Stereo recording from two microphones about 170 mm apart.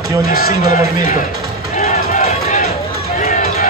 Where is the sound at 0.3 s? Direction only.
60° left (ahead or behind).